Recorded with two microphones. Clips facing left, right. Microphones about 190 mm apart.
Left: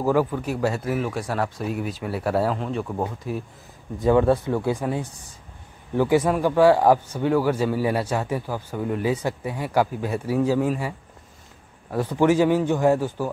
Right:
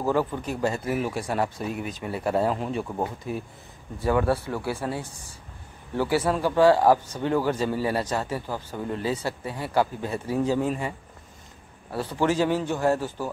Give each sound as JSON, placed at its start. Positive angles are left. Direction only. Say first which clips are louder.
{"t": 0.0, "sound": "a man's voice", "louder": "left 3 dB", "side_deg": 10}
{"t": 4.0, "sound": "a man's voice", "louder": "left 5 dB", "side_deg": 20}
{"t": 12.0, "sound": "a man's voice", "louder": "left 5 dB", "side_deg": 15}